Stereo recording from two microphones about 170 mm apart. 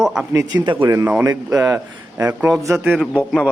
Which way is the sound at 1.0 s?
10° right (ahead or behind).